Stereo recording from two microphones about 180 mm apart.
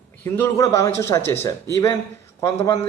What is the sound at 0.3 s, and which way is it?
Speech, 15° left (ahead or behind).